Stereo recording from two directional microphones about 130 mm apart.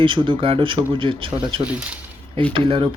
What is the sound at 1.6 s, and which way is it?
Speech, 10° right (ahead or behind).